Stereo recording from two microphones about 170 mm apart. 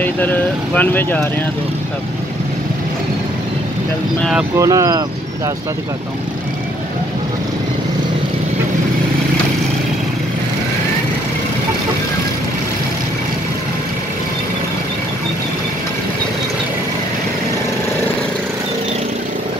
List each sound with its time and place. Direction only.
0.0 s speech: 10° left (ahead or behind)
4.6 s speech: 20° right (ahead or behind)